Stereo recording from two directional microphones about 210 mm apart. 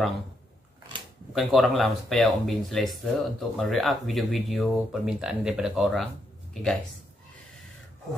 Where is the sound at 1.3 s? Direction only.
Centre (ahead or behind).